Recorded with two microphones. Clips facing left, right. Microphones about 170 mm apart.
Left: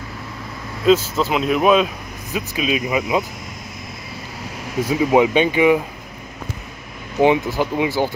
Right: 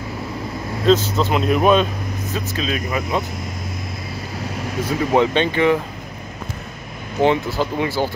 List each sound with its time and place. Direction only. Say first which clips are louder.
0.8 s speech: left 1 dB; 5° left (ahead or behind)
2.3 s speech: left 3 dB; 15° left (ahead or behind)
4.8 s speech: left 2 dB; 10° left (ahead or behind)
7.2 s speech: left 2 dB; 15° left (ahead or behind)